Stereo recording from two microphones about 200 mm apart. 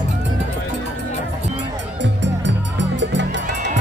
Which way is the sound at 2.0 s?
65° right (ahead or behind).